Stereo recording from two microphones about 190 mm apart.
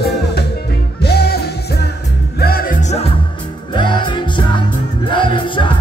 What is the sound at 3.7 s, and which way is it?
Music, 25° left (ahead or behind).